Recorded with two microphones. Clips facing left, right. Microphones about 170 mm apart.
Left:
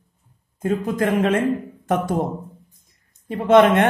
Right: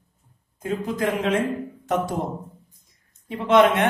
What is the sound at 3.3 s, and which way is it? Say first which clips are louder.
Speech: left 3 dB; 50° left (ahead or behind).